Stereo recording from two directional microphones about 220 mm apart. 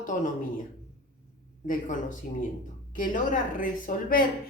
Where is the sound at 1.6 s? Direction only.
35° left (ahead or behind).